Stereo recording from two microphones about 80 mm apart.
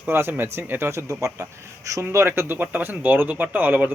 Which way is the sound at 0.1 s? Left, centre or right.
Right.